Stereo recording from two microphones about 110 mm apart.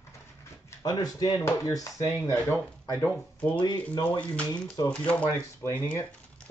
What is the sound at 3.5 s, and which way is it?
Speech, 45° left (ahead or behind).